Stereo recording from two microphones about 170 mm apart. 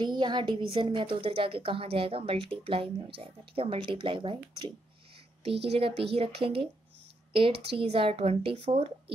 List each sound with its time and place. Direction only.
0.0 s a woman's voice: 25° right (ahead or behind)